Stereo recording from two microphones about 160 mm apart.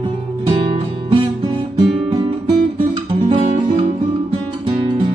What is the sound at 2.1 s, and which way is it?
Guitar, 30° right (ahead or behind).